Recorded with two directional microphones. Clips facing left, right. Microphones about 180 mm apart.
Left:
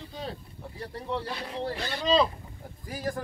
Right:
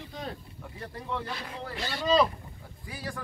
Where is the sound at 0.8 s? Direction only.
30° left (ahead or behind).